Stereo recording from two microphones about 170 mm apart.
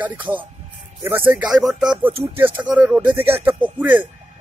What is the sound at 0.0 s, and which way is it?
Speech, 10° right (ahead or behind).